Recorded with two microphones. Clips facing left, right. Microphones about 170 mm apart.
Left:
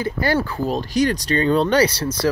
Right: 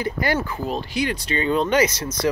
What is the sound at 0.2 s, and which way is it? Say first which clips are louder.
Speech: left 5 dB; 30° left (ahead or behind).